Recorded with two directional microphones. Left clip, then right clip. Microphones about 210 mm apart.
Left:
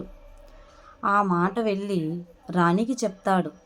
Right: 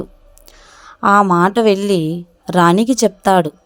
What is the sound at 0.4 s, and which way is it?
A woman's voice, 45° right (ahead or behind).